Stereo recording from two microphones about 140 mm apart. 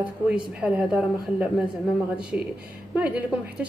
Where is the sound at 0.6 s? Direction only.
10° right (ahead or behind).